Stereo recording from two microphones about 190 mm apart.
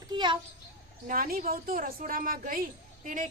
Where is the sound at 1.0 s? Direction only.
45° right (ahead or behind).